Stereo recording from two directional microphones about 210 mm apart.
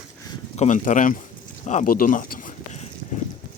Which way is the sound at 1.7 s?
40° left (ahead or behind).